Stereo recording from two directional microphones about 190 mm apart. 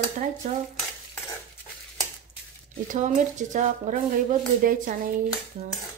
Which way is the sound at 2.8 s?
40° right (ahead or behind).